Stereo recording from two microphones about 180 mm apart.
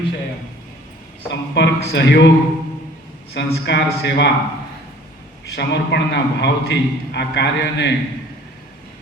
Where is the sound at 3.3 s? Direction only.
70° left (ahead or behind).